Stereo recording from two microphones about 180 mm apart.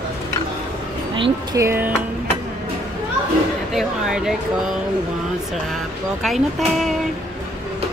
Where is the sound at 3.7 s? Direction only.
Centre (ahead or behind).